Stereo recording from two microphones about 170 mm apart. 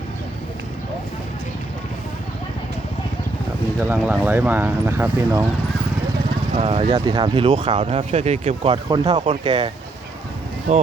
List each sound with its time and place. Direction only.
3.8 s speech: 10° right (ahead or behind)
6.6 s speech: 30° right (ahead or behind)
10.7 s speech: 40° right (ahead or behind)